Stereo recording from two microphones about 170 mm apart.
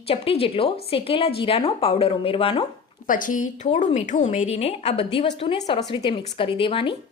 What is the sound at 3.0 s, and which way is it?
A woman's voice, 50° left (ahead or behind).